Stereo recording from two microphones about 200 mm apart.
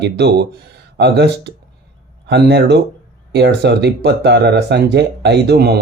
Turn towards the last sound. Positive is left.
turn(degrees=-55)  # may be behind; listen again after turning